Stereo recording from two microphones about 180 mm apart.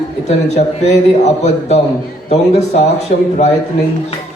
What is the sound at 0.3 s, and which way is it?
A man's voice, 40° left (ahead or behind).